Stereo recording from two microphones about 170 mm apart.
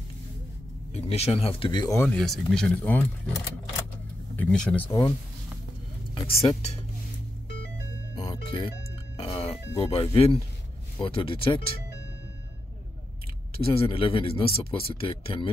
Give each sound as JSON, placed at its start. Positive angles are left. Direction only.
{"t": 0.9, "sound": "speech", "side_deg": 40}
{"t": 2.0, "sound": "speech", "side_deg": 5}
{"t": 4.4, "sound": "speech", "side_deg": 5}
{"t": 6.2, "sound": "speech", "side_deg": 35}
{"t": 8.2, "sound": "music", "side_deg": 30}
{"t": 9.8, "sound": "speech", "side_deg": 35}
{"t": 13.6, "sound": "speech", "side_deg": 35}